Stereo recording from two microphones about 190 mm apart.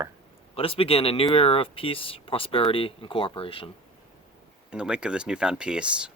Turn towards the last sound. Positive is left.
turn(degrees=-5)  # may be behind; listen again after turning